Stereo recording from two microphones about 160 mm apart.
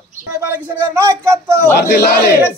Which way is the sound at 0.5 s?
15° right (ahead or behind).